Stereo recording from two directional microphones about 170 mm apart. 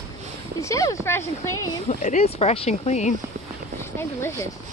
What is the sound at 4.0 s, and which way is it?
Speech, 15° left (ahead or behind).